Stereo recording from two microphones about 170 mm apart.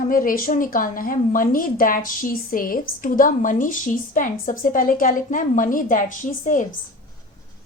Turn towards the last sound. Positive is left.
turn(degrees=50)  # may be behind; listen again after turning